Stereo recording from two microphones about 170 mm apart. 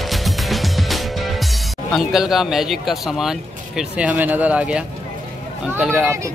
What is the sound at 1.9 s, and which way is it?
Speech, centre (ahead or behind).